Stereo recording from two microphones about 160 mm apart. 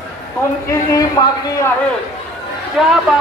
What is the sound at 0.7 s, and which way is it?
Speech, 20° left (ahead or behind).